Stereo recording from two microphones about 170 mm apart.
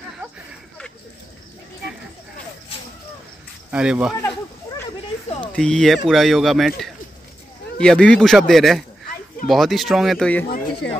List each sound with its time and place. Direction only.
3.7 s speech: 5° right (ahead or behind)
5.6 s speech: 5° left (ahead or behind)
7.8 s speech: 5° left (ahead or behind)
10.8 s speech: 90° left